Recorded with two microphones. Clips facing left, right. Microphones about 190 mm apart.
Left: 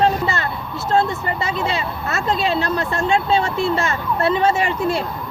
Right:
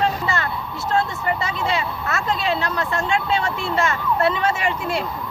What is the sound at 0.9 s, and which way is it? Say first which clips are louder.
Speech: left 3 dB; 30° left (ahead or behind).